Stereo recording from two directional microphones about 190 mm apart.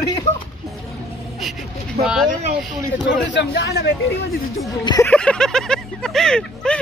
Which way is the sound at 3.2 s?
65° left (ahead or behind).